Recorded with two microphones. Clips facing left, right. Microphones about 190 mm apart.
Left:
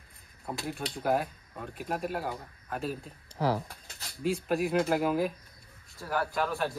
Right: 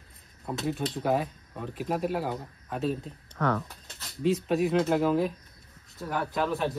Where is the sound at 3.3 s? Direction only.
30° left (ahead or behind).